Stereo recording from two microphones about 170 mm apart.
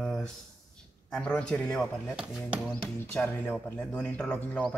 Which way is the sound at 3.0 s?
15° left (ahead or behind).